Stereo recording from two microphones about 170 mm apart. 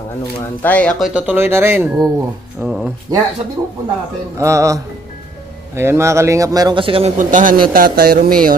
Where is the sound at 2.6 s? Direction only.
10° right (ahead or behind).